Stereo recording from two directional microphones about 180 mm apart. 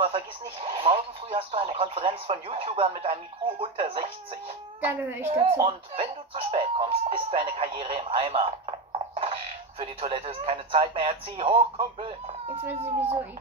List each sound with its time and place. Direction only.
0.0 s speech: 30° right (ahead or behind)
5.2 s speech: 35° right (ahead or behind)